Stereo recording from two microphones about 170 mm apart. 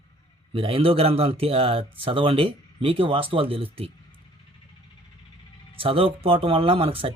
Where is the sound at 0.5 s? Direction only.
35° right (ahead or behind).